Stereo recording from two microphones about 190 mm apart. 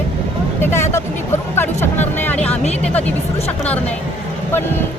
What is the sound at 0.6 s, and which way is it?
Music, 15° left (ahead or behind).